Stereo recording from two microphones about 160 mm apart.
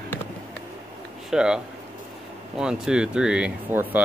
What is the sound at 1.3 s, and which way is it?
Speech, 5° right (ahead or behind).